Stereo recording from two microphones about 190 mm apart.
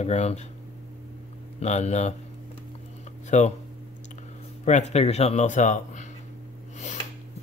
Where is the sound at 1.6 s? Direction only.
35° left (ahead or behind).